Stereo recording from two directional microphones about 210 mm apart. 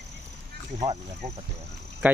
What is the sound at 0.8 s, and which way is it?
Speech, 25° right (ahead or behind).